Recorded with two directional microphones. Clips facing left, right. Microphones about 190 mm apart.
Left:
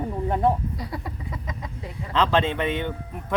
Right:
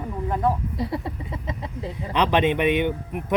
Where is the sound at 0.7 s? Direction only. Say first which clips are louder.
Right 6 dB; 25° right (ahead or behind).